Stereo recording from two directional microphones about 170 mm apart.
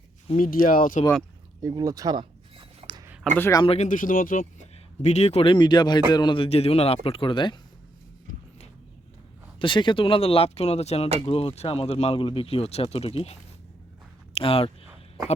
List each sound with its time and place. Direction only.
0.3 s speech: 55° left (ahead or behind)
1.6 s a sound: 20° right (ahead or behind)
3.3 s speech: 15° left (ahead or behind)
3.6 s speech: 35° left (ahead or behind)
3.8 s speech: 50° left (ahead or behind)
5.0 s speech: 40° left (ahead or behind)
9.6 s speech: 30° left (ahead or behind)